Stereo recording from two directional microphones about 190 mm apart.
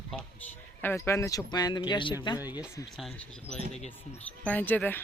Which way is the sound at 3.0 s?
Centre (ahead or behind).